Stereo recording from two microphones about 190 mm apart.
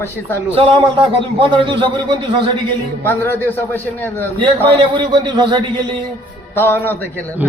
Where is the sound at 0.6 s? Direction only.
25° right (ahead or behind).